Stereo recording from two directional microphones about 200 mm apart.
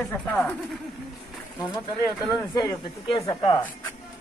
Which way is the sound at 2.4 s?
10° left (ahead or behind).